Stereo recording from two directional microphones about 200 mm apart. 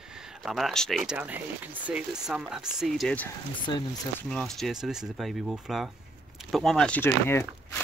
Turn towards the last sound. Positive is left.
turn(degrees=10)  # may be behind; listen again after turning